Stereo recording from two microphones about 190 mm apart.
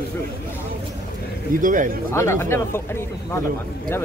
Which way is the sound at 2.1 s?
15° left (ahead or behind).